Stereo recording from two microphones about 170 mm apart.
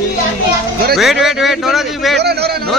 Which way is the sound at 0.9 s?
Centre (ahead or behind).